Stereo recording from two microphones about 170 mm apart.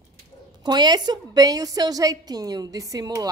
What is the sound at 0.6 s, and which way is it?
A woman's voice, 25° right (ahead or behind).